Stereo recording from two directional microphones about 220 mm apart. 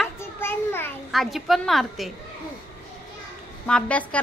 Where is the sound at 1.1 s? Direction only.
Centre (ahead or behind).